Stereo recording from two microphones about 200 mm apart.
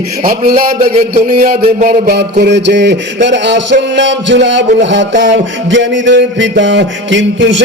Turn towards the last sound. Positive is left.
turn(degrees=-65)  # may be behind; listen again after turning